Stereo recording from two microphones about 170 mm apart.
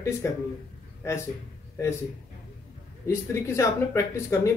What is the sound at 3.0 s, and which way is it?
Speech, 15° left (ahead or behind).